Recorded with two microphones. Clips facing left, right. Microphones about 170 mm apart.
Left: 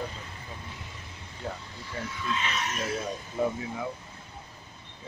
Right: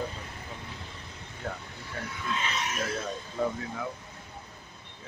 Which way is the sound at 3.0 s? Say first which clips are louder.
Left 3 dB; 10° left (ahead or behind).